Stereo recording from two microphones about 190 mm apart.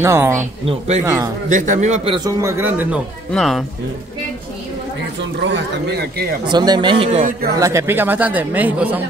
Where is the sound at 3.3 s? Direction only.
Centre (ahead or behind).